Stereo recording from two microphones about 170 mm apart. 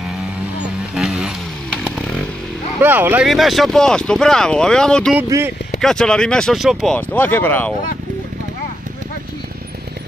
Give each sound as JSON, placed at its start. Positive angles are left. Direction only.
{"t": 0.9, "sound": "vehicle", "side_deg": 0}
{"t": 2.8, "sound": "speech", "side_deg": -10}
{"t": 3.3, "sound": "speech", "side_deg": 0}
{"t": 5.3, "sound": "speech", "side_deg": -20}
{"t": 5.8, "sound": "speech", "side_deg": 5}